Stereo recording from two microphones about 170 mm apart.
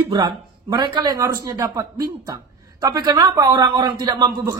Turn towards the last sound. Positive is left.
turn(degrees=-25)  # may be behind; listen again after turning